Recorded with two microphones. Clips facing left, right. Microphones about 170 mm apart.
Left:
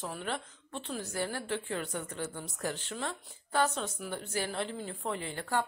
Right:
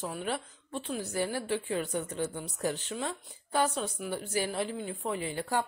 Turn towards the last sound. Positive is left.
turn(degrees=-15)  # may be behind; listen again after turning